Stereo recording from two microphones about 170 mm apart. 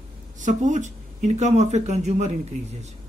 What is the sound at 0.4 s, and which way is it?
Speech, 45° right (ahead or behind).